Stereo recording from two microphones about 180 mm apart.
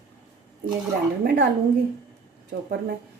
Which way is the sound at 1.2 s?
70° right (ahead or behind).